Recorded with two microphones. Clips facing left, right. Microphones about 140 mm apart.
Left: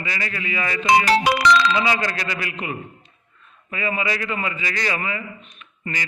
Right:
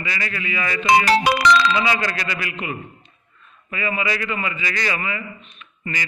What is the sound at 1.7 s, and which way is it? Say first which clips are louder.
A man's voice: even; 35° left (ahead or behind).